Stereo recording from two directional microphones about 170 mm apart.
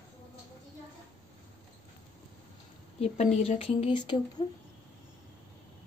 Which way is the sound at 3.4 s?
35° left (ahead or behind).